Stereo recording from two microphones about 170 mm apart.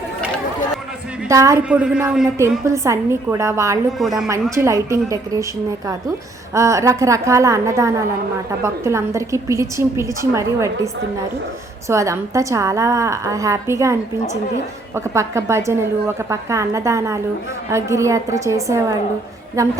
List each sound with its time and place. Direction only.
1.3 s a woman's voice: 20° right (ahead or behind)
1.6 s a woman's voice: 5° right (ahead or behind)
2.6 s a woman's voice: 15° right (ahead or behind)
3.9 s speech: centre (ahead or behind)
4.5 s a woman's voice: 15° right (ahead or behind)
6.5 s a woman's voice: 20° right (ahead or behind)
11.9 s a woman's voice: 15° right (ahead or behind)
14.9 s a woman's voice: 15° right (ahead or behind)